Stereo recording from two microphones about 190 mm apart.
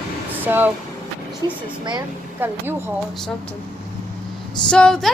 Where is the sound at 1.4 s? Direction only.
20° right (ahead or behind).